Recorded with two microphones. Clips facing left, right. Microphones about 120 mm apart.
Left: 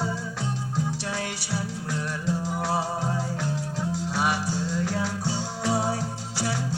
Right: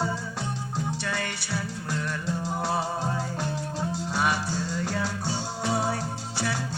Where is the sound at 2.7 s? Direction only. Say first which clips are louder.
Left 2 dB; 15° left (ahead or behind).